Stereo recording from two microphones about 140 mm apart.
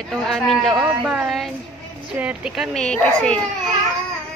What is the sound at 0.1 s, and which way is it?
Speech, centre (ahead or behind).